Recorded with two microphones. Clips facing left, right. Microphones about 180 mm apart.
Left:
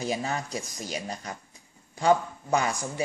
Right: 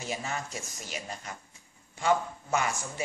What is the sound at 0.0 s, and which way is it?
A man's voice, 35° left (ahead or behind).